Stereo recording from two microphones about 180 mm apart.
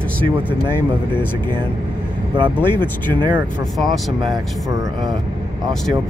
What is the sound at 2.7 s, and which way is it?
Speech, 25° right (ahead or behind).